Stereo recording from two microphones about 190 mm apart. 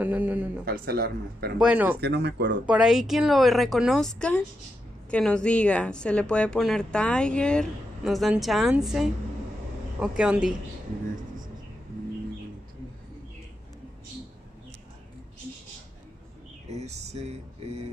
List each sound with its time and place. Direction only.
0.0 s a sound: 10° right (ahead or behind)
0.7 s speech: 55° right (ahead or behind)
1.6 s speech: 5° right (ahead or behind)
2.0 s speech: 60° right (ahead or behind)
2.6 s a woman's voice: 5° right (ahead or behind)
16.6 s a sound: 35° right (ahead or behind)